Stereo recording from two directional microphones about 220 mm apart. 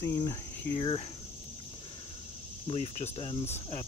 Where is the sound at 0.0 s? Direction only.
15° left (ahead or behind).